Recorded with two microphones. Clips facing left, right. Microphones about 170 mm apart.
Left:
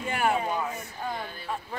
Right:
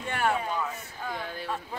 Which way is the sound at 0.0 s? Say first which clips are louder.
Left 2 dB; 10° left (ahead or behind).